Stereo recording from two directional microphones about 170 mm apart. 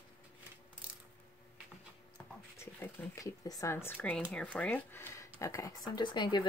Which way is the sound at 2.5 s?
15° left (ahead or behind).